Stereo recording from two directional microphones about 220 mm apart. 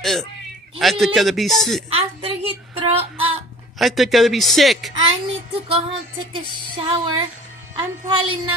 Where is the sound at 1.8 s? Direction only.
25° right (ahead or behind).